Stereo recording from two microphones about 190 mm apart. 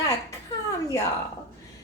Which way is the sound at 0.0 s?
20° left (ahead or behind).